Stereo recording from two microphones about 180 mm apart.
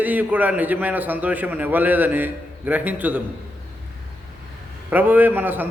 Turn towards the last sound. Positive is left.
turn(degrees=-10)  # may be behind; listen again after turning